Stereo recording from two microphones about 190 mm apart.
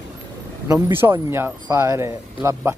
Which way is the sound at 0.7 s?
10° right (ahead or behind).